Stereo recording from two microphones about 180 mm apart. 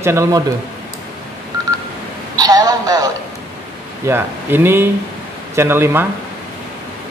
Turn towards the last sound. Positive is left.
turn(degrees=-15)  # may be behind; listen again after turning